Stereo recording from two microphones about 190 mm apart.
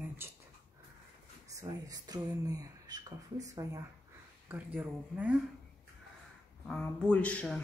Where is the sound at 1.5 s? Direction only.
20° right (ahead or behind).